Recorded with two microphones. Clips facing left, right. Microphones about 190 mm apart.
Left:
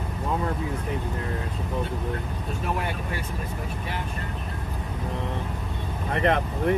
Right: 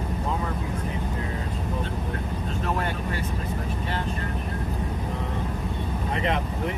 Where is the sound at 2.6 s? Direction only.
10° left (ahead or behind).